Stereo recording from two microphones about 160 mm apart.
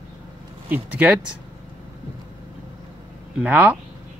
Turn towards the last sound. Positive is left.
turn(degrees=-10)  # may be behind; listen again after turning